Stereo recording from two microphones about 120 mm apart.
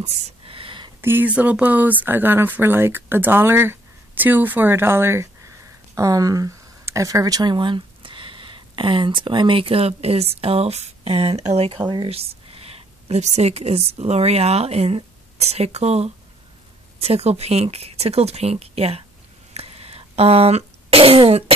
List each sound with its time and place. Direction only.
0.0 s a sound: 50° right (ahead or behind)
1.0 s a woman's voice: 15° right (ahead or behind); by 19.0 s 55° right (ahead or behind)
19.5 s fart: 55° right (ahead or behind)